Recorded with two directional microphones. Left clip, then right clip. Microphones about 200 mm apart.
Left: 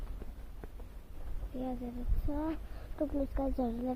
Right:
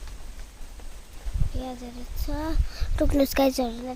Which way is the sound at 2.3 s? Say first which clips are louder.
Right 5 dB; 10° right (ahead or behind).